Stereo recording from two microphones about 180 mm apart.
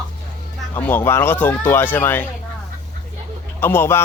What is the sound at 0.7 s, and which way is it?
Speech, 10° left (ahead or behind).